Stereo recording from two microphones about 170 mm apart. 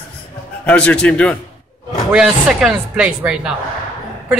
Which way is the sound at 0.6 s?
5° left (ahead or behind).